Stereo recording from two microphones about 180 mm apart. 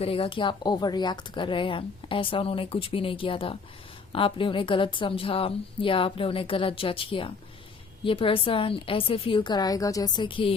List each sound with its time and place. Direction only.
0.0 s speech: 30° left (ahead or behind)